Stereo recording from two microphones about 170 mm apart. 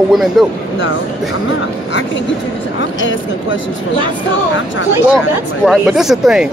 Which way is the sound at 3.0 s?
90° left.